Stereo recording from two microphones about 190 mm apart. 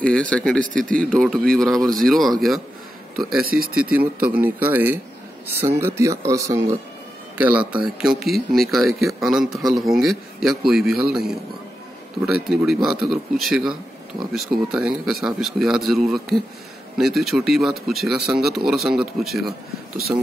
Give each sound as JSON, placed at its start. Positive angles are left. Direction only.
{"t": 0.0, "sound": "a man's voice", "side_deg": 5}
{"t": 3.4, "sound": "speech", "side_deg": -50}
{"t": 4.2, "sound": "a man's voice", "side_deg": -10}
{"t": 12.4, "sound": "a man's voice", "side_deg": 0}